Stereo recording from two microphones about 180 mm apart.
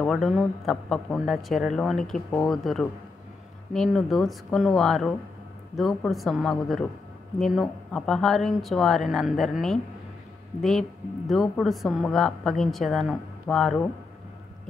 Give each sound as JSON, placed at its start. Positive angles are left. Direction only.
{"t": 0.0, "sound": "a woman's voice", "side_deg": 0}